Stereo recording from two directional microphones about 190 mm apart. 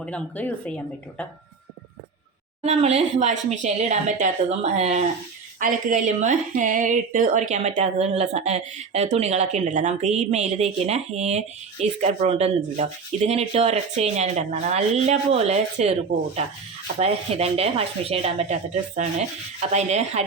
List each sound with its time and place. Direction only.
0.0 s speech: 5° left (ahead or behind)
2.6 s speech: 35° right (ahead or behind)
17.0 s speech: 30° right (ahead or behind)
19.7 s speech: 35° right (ahead or behind)